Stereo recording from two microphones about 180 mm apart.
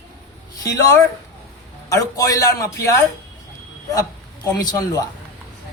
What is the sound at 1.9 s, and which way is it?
A man's voice, 20° left (ahead or behind).